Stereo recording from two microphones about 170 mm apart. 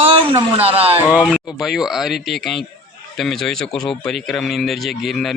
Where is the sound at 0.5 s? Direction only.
35° right (ahead or behind).